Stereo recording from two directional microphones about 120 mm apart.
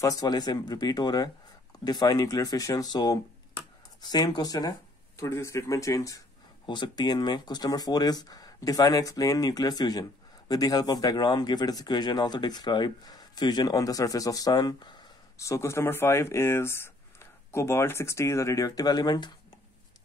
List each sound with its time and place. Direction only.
0.0 s speech: 30° left (ahead or behind)
6.6 s speech: 40° left (ahead or behind)
15.3 s speech: 25° left (ahead or behind)